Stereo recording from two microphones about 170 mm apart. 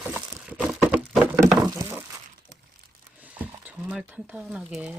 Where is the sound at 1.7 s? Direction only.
15° right (ahead or behind).